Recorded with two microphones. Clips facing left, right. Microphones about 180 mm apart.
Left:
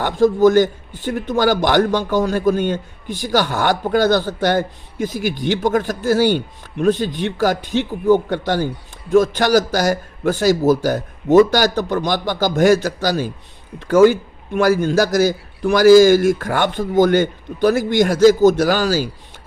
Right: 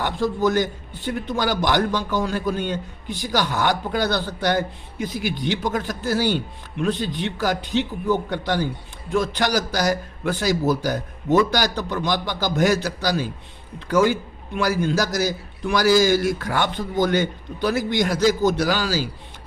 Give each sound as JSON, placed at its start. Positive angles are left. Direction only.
{"t": 0.0, "sound": "a man's voice", "side_deg": 45}